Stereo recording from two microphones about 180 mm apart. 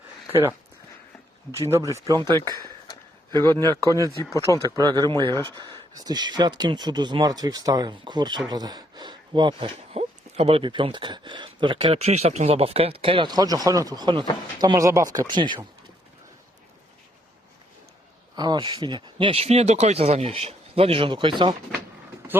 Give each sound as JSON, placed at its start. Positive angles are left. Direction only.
{"t": 1.7, "sound": "speech", "side_deg": -15}
{"t": 18.3, "sound": "speech", "side_deg": -25}